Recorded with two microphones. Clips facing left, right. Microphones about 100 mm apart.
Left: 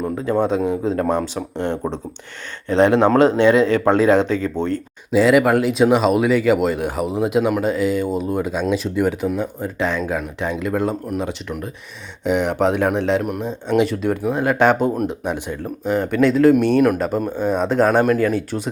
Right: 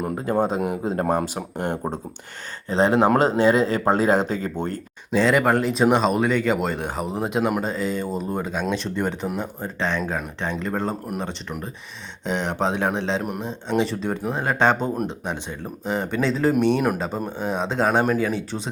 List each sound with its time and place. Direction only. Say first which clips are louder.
0.2 s speech: left 4 dB; 45° right (ahead or behind)
2.6 s speech: left 4 dB; 35° right (ahead or behind)
5.1 s speech: left 5 dB; 5° left (ahead or behind)
12.2 s speech: left 7 dB; 5° left (ahead or behind)
12.5 s speech: left 5 dB; 20° right (ahead or behind)
13.2 s speech: left 4 dB; 5° left (ahead or behind)
16.2 s speech: left 9 dB; 30° right (ahead or behind)
16.5 s speech: left 5 dB; centre (ahead or behind)
17.5 s speech: left 6 dB; 20° right (ahead or behind)
17.8 s speech: left 3 dB; centre (ahead or behind)